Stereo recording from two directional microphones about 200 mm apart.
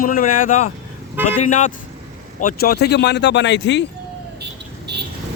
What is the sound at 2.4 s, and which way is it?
Speech, 45° left (ahead or behind).